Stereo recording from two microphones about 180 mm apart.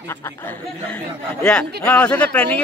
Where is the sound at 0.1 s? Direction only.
10° left (ahead or behind).